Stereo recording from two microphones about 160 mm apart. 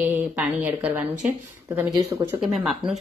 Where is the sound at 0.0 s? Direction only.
10° right (ahead or behind).